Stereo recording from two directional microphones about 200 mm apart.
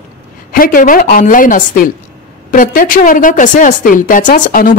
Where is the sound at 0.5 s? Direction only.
45° left (ahead or behind).